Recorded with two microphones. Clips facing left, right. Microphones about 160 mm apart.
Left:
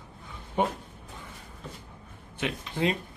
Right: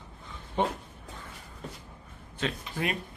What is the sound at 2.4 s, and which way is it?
Speech, 25° left (ahead or behind).